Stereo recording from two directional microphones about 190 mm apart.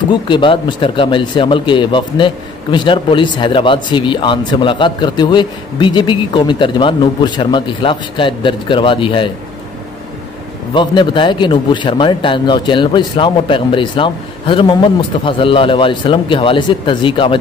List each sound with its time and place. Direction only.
0.1 s speech: 25° left (ahead or behind)
10.7 s speech: 25° left (ahead or behind)